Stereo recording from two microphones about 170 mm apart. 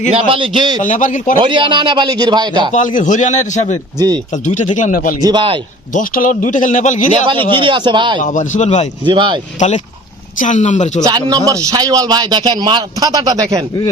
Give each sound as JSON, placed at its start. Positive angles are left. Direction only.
{"t": 0.1, "sound": "a man's voice", "side_deg": -30}
{"t": 0.8, "sound": "a man's voice", "side_deg": 50}
{"t": 1.4, "sound": "a man's voice", "side_deg": -30}
{"t": 2.7, "sound": "a man's voice", "side_deg": 50}
{"t": 3.9, "sound": "a man's voice", "side_deg": -25}
{"t": 4.4, "sound": "a man's voice", "side_deg": 45}
{"t": 5.2, "sound": "a man's voice", "side_deg": -25}
{"t": 5.9, "sound": "a man's voice", "side_deg": 50}
{"t": 7.1, "sound": "a man's voice", "side_deg": -30}
{"t": 8.2, "sound": "a man's voice", "side_deg": 45}
{"t": 9.0, "sound": "a man's voice", "side_deg": -30}
{"t": 9.6, "sound": "a man's voice", "side_deg": 40}
{"t": 11.0, "sound": "a man's voice", "side_deg": -20}